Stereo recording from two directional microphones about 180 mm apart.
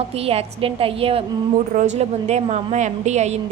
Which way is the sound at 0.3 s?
30° right (ahead or behind).